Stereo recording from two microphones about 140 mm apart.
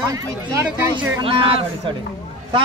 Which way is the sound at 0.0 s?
25° right (ahead or behind).